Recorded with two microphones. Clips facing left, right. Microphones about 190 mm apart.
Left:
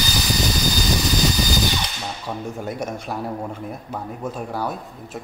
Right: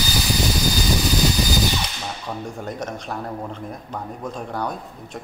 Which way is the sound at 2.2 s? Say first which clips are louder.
Left 3 dB; 5° left (ahead or behind).